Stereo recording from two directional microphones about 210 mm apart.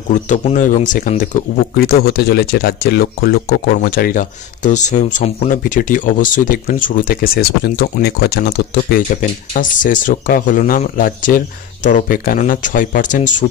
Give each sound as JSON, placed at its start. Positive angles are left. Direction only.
{"t": 0.1, "sound": "speech", "side_deg": 35}